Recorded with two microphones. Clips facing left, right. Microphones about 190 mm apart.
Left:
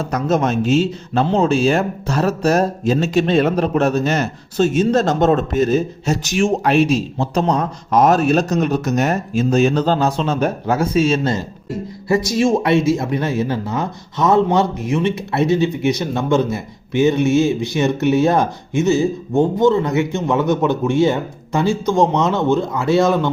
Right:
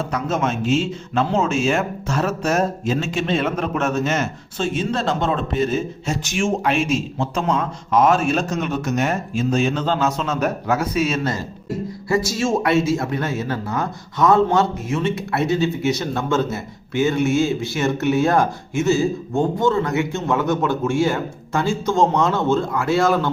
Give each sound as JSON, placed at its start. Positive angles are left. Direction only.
{"t": 0.0, "sound": "speech", "side_deg": 40}